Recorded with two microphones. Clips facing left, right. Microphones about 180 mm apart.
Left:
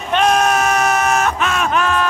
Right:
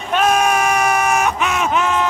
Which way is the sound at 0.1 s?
5° right (ahead or behind).